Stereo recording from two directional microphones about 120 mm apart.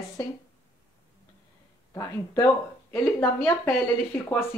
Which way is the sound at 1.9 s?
25° left (ahead or behind).